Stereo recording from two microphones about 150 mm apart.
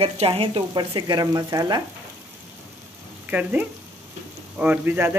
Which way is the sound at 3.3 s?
10° right (ahead or behind).